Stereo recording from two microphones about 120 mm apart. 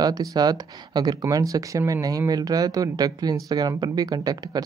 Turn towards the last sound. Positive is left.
turn(degrees=-35)  # may be behind; listen again after turning